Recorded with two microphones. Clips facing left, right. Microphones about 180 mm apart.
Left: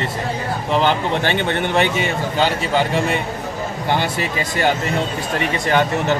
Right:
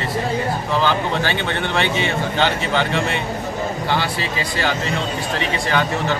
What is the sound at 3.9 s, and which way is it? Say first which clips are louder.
Speech: left 2 dB; 50° left (ahead or behind).